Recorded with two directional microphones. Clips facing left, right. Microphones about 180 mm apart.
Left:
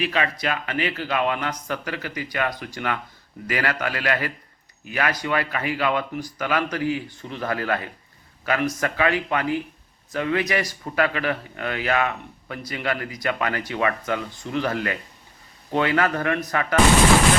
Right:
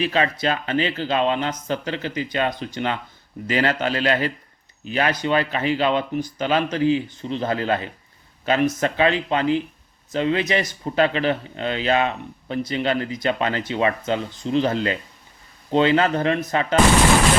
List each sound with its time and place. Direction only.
0.0 s a man's voice: 30° right (ahead or behind)